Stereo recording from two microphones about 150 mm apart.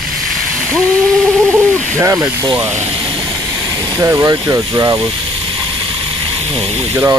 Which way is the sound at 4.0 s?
20° right (ahead or behind).